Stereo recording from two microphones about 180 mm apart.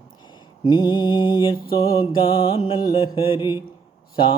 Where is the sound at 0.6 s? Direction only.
25° left (ahead or behind).